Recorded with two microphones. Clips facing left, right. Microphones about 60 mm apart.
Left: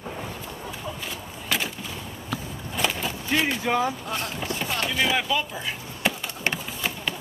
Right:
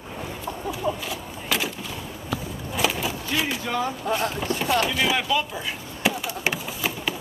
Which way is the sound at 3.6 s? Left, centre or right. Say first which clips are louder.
Left 3 dB; centre.